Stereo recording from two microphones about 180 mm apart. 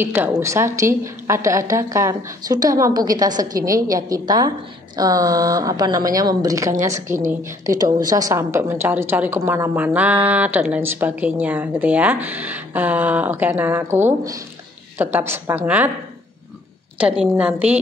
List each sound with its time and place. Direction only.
0.0 s a woman's voice: 10° right (ahead or behind)
17.0 s a woman's voice: 10° right (ahead or behind)